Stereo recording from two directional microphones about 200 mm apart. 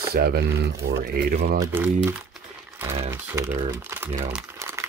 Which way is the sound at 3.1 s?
15° right (ahead or behind).